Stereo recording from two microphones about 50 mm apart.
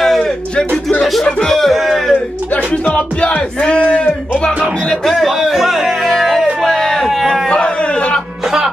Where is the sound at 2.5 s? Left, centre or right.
Left.